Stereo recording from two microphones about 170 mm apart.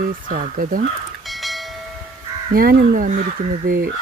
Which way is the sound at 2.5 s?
60° right (ahead or behind).